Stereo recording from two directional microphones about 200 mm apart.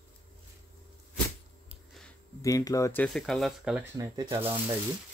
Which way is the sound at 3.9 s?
15° right (ahead or behind).